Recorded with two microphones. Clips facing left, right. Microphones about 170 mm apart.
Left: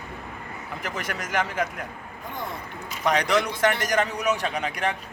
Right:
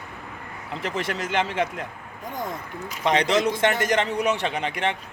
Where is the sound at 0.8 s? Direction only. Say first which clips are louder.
Right 5 dB; 30° right (ahead or behind).